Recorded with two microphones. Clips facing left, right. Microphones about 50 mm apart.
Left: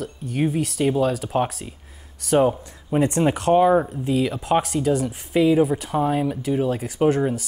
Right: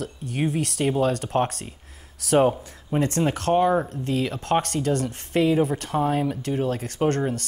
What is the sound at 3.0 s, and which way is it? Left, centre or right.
Speech, centre.